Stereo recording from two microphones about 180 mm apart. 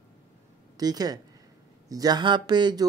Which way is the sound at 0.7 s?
20° right (ahead or behind).